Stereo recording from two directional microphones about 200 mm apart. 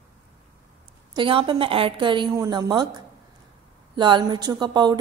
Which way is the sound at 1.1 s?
25° right (ahead or behind).